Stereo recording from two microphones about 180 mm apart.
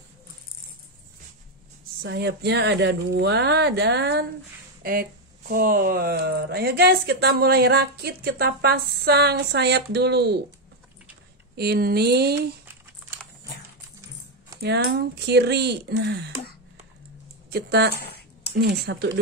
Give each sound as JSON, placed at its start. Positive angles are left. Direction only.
{"t": 2.0, "sound": "speech", "side_deg": -65}
{"t": 5.5, "sound": "speech", "side_deg": -50}
{"t": 11.5, "sound": "speech", "side_deg": -60}
{"t": 14.6, "sound": "speech", "side_deg": -65}
{"t": 17.5, "sound": "speech", "side_deg": -65}
{"t": 18.0, "sound": "dishes", "side_deg": 65}
{"t": 18.5, "sound": "speech", "side_deg": -65}